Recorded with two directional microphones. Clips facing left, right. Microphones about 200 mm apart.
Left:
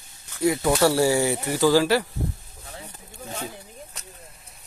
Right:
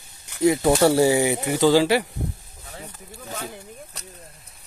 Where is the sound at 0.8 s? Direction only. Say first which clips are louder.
Right 1 dB; 20° right (ahead or behind).